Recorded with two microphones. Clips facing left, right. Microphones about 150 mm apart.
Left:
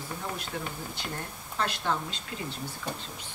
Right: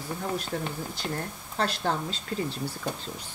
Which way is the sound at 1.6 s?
35° right (ahead or behind).